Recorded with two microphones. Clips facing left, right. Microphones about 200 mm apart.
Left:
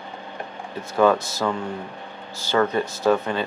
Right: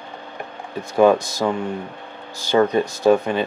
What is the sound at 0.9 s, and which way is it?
Speech, 15° right (ahead or behind).